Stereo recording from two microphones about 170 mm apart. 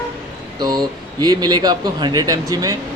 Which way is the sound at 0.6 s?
25° right (ahead or behind).